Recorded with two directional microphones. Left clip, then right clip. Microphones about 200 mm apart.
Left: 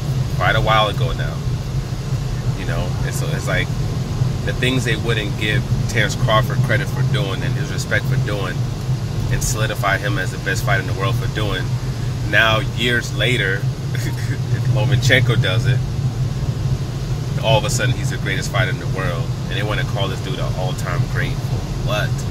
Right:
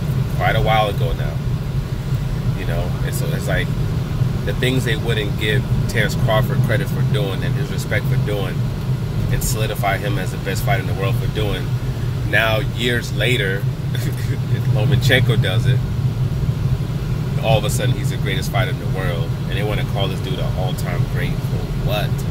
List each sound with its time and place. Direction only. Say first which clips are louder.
0.4 s speech: left 1 dB; 5° right (ahead or behind)
4.6 s speech: left 1 dB; 5° right (ahead or behind)
9.6 s speech: left 2 dB; 5° right (ahead or behind)
12.3 s speech: left 2 dB; 10° right (ahead or behind)
14.9 s speech: left 1 dB; 10° right (ahead or behind)
17.5 s speech: left 2 dB; 5° right (ahead or behind)